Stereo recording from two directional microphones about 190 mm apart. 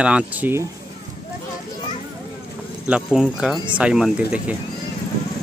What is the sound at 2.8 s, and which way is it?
Speech, 5° right (ahead or behind).